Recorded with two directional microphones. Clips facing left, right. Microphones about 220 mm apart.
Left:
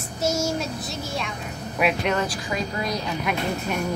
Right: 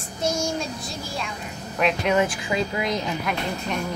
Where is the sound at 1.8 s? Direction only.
5° left (ahead or behind).